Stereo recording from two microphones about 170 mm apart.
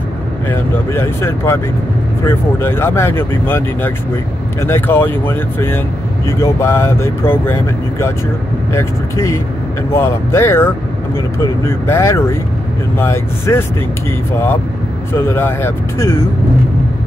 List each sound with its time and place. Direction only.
0.5 s speech: 15° left (ahead or behind)
15.1 s speech: 15° left (ahead or behind)